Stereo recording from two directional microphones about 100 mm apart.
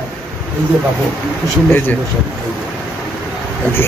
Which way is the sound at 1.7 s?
20° left (ahead or behind).